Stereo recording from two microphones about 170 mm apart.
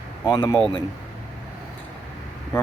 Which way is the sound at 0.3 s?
20° left (ahead or behind).